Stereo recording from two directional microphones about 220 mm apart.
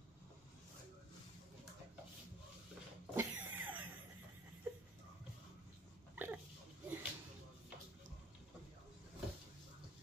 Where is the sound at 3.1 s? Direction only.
10° right (ahead or behind).